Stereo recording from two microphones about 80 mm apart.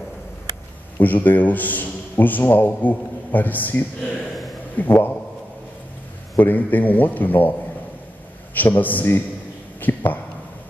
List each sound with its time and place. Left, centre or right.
0.9 s a man's voice: left
6.3 s a man's voice: left
8.5 s a man's voice: left
9.8 s a sound: left